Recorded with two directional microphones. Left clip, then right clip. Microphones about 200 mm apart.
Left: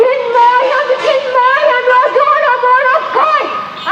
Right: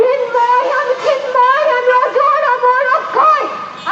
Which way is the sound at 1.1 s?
25° right (ahead or behind).